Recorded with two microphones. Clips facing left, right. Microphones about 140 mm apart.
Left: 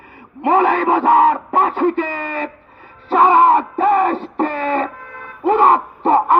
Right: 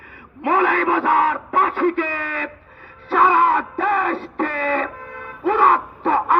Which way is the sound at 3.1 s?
40° left (ahead or behind).